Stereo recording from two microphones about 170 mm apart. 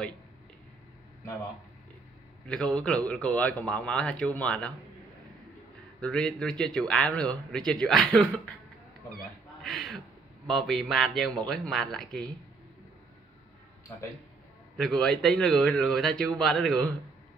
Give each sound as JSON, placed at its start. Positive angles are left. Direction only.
{"t": 2.4, "sound": "a man's voice", "side_deg": 5}
{"t": 5.9, "sound": "a man's voice", "side_deg": 5}
{"t": 9.6, "sound": "a sound", "side_deg": 0}
{"t": 11.4, "sound": "a man's voice", "side_deg": 5}
{"t": 14.8, "sound": "a man's voice", "side_deg": 5}